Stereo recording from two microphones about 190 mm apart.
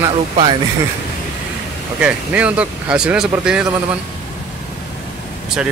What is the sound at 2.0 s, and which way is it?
Speech, 5° right (ahead or behind).